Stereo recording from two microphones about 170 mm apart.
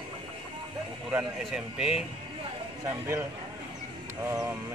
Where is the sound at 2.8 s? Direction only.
15° right (ahead or behind).